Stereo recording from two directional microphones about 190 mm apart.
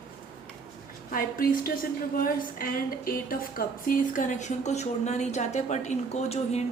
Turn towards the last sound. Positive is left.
turn(degrees=35)  # may be behind; listen again after turning